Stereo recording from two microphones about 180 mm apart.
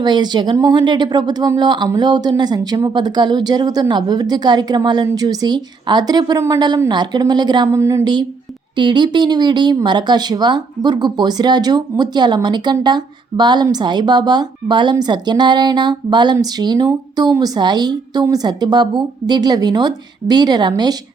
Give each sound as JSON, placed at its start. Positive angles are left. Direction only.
{"t": 0.0, "sound": "speech", "side_deg": -25}